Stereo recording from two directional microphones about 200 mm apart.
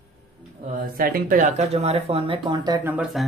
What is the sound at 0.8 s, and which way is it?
Speech, 45° right (ahead or behind).